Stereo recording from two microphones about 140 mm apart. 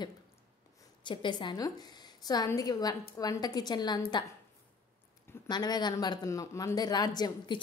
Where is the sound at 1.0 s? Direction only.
35° left (ahead or behind).